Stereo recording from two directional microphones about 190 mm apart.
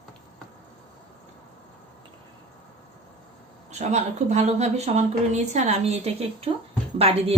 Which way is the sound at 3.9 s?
35° right (ahead or behind).